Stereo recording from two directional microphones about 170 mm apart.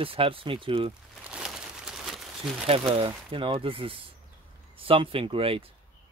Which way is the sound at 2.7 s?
30° right (ahead or behind).